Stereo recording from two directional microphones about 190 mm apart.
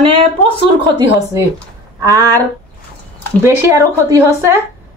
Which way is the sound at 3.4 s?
15° right (ahead or behind).